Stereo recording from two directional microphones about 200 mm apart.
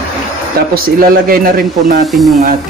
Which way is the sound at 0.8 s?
45° right (ahead or behind).